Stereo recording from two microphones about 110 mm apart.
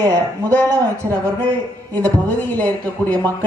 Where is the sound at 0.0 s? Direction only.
35° right (ahead or behind).